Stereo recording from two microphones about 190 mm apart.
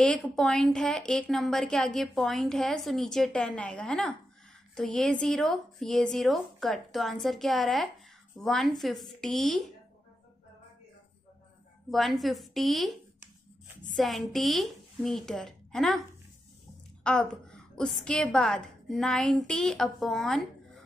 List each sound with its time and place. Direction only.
0.0 s a woman's voice: 5° left (ahead or behind)
11.9 s a woman's voice: centre (ahead or behind)
13.9 s a woman's voice: centre (ahead or behind)
17.0 s a woman's voice: 5° left (ahead or behind)